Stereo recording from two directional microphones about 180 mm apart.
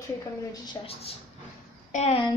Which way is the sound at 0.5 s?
25° left (ahead or behind).